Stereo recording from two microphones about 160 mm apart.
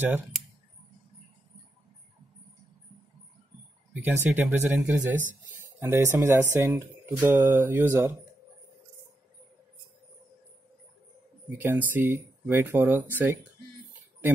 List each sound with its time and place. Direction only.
4.0 s speech: 10° right (ahead or behind)
11.6 s speech: 10° right (ahead or behind)